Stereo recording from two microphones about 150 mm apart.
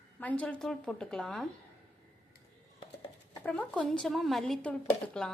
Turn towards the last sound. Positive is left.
turn(degrees=5)  # may be behind; listen again after turning